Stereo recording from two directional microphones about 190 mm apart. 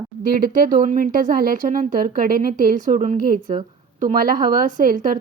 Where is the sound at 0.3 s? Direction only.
50° right (ahead or behind).